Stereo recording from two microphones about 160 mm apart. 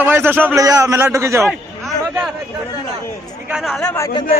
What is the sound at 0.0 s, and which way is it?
A man's voice, 15° right (ahead or behind).